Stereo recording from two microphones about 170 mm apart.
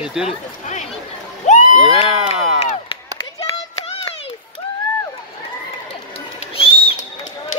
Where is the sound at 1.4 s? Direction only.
45° left (ahead or behind).